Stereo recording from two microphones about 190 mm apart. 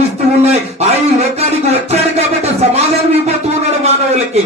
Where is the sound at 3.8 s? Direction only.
35° right (ahead or behind).